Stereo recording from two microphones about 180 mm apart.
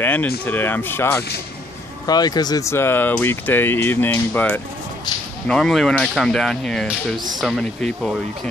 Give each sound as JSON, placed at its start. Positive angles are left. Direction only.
{"t": 0.0, "sound": "speech", "side_deg": 10}